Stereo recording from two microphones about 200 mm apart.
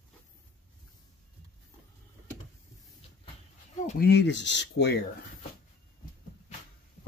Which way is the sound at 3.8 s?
50° left (ahead or behind).